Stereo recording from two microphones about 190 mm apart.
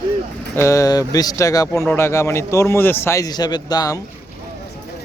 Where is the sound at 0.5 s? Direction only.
15° left (ahead or behind).